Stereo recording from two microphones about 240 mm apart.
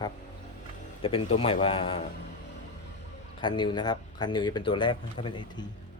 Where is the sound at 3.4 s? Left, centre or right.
Centre.